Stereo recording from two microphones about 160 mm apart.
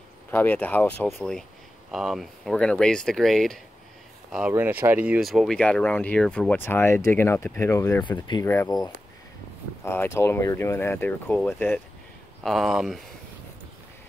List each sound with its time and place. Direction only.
0.3 s speech: 10° left (ahead or behind); by 8.5 s 25° left (ahead or behind)
8.5 s speech: 15° left (ahead or behind)
9.8 s speech: 15° left (ahead or behind)
12.4 s speech: centre (ahead or behind)